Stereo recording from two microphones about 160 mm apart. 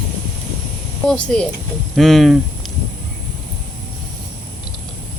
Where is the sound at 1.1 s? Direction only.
5° left (ahead or behind).